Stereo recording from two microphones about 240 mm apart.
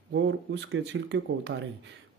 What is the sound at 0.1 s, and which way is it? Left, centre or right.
Speech, right.